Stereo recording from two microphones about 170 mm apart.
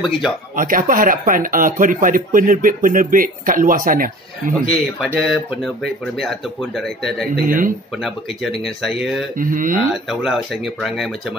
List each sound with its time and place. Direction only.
0.6 s speech: 55° right (ahead or behind)
5.0 s speech: centre (ahead or behind)
7.4 s speech: 55° right (ahead or behind)
8.0 s speech: centre (ahead or behind)
9.4 s speech: 50° right (ahead or behind)
10.0 s speech: centre (ahead or behind)